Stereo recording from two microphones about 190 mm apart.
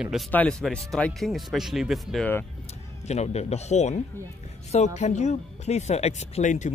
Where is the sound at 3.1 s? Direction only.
35° left (ahead or behind).